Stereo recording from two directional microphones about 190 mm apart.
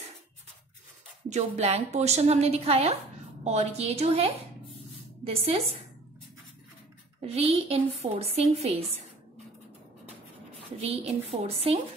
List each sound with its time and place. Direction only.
1.3 s a woman's voice: 35° right (ahead or behind)
7.2 s a woman's voice: 35° right (ahead or behind)
10.8 s a woman's voice: 35° right (ahead or behind)